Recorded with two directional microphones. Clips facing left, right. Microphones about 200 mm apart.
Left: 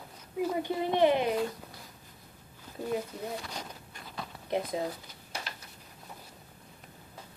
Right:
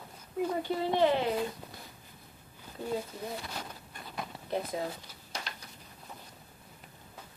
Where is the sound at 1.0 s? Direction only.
15° left (ahead or behind).